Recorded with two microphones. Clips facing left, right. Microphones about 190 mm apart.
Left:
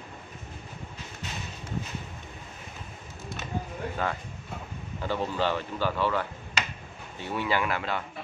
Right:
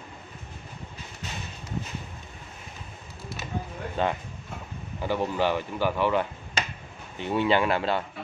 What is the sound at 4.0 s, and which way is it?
Speech, 25° right (ahead or behind).